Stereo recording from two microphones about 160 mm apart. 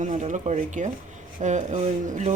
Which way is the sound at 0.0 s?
50° right (ahead or behind).